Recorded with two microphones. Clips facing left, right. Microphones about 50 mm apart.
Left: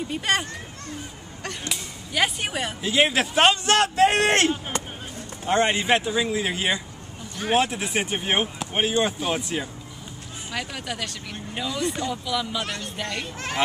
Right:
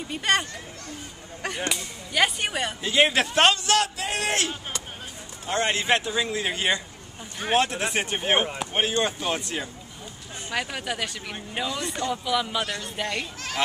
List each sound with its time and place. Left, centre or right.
0.1 s speech: centre
1.7 s speech: centre
3.6 s a man's voice: left
5.4 s speech: left; by 9.7 s centre
10.5 s speech: centre